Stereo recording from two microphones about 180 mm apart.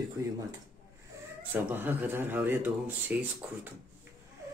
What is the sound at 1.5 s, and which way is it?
Speech, 10° right (ahead or behind).